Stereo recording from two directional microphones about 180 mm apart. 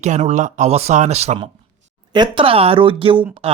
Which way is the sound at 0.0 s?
40° right (ahead or behind).